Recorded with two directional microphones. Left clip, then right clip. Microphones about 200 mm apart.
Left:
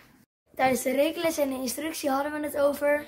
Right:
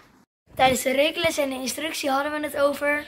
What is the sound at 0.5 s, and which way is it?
Speech, 5° right (ahead or behind).